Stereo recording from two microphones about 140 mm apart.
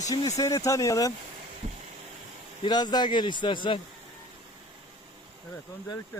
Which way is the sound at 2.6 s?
30° left (ahead or behind).